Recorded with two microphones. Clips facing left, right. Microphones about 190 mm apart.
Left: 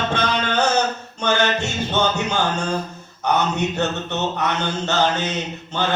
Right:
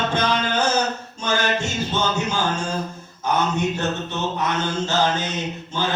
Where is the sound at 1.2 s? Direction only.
65° left (ahead or behind).